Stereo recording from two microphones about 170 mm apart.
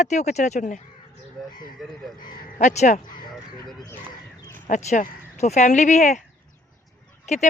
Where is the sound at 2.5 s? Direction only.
45° left (ahead or behind).